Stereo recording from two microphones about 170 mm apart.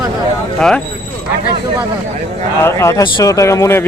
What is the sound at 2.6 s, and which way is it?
A man's voice, 15° left (ahead or behind).